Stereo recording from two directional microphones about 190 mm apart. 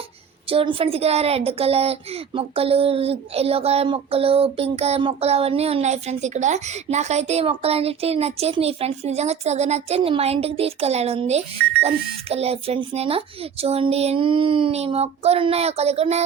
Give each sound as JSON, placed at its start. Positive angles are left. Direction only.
{"t": 0.4, "sound": "speech", "side_deg": -30}